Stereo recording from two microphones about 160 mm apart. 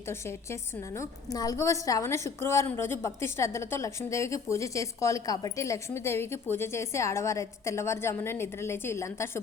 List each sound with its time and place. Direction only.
0.9 s a woman's voice: 25° left (ahead or behind)